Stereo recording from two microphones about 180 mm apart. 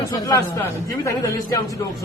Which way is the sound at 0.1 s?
20° left (ahead or behind).